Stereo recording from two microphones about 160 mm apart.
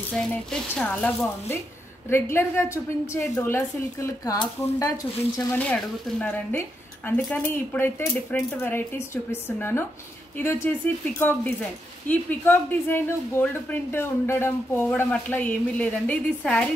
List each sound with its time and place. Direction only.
0.1 s speech: 5° left (ahead or behind)
5.5 s speech: 10° left (ahead or behind)